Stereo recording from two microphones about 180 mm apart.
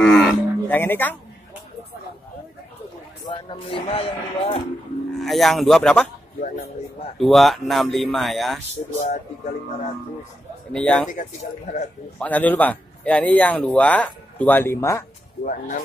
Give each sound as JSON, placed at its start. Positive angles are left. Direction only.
{"t": 0.0, "sound": "livestock", "side_deg": 5}
{"t": 3.3, "sound": "speech", "side_deg": 30}
{"t": 5.1, "sound": "speech", "side_deg": 0}
{"t": 7.2, "sound": "speech", "side_deg": 0}
{"t": 10.7, "sound": "speech", "side_deg": 5}
{"t": 11.1, "sound": "speech", "side_deg": 40}
{"t": 12.2, "sound": "a man's voice", "side_deg": 10}
{"t": 15.4, "sound": "speech", "side_deg": 45}